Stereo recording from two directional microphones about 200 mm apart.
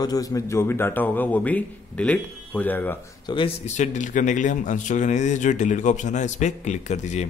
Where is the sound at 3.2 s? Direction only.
25° left (ahead or behind).